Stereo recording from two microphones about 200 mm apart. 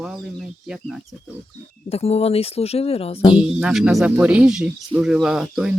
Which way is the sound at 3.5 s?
5° right (ahead or behind).